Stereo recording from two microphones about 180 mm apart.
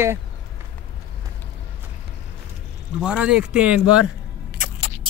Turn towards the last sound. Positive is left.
turn(degrees=-5)  # may be behind; listen again after turning